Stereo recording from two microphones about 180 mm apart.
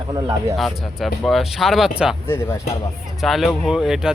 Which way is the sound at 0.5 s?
Centre (ahead or behind).